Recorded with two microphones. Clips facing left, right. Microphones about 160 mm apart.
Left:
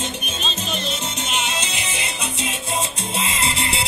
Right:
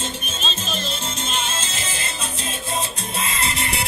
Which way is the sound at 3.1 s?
25° left (ahead or behind).